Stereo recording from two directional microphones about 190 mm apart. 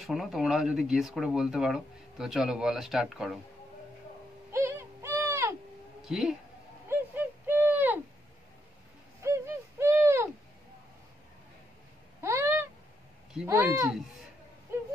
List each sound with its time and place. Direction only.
0.0 s speech: centre (ahead or behind)
4.5 s a sound: 15° right (ahead or behind)
6.0 s speech: centre (ahead or behind)
6.9 s owl: 10° right (ahead or behind)
9.2 s hoot: 15° right (ahead or behind)
12.2 s a sound: 15° right (ahead or behind)